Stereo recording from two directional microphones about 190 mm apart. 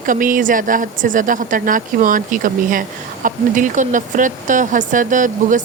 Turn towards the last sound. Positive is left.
turn(degrees=-40)  # may be behind; listen again after turning